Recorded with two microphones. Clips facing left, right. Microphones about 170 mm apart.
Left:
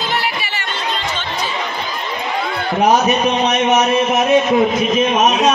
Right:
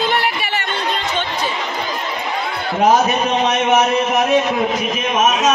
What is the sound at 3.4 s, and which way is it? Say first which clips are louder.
A man's voice: left 1 dB; 20° left (ahead or behind).